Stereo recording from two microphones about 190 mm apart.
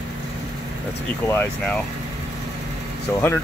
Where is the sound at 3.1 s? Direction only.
5° left (ahead or behind).